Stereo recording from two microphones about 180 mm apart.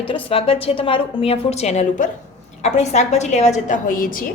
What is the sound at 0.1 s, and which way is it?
A woman's voice, 30° left (ahead or behind).